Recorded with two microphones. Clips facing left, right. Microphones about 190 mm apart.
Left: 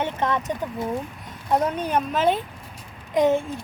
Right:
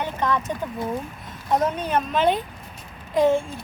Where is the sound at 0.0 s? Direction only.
25° left (ahead or behind).